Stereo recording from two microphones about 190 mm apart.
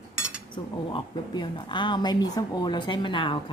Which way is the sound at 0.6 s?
25° left (ahead or behind).